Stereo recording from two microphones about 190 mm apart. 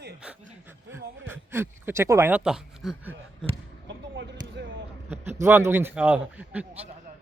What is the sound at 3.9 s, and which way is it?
Basketball bounce, 70° right (ahead or behind).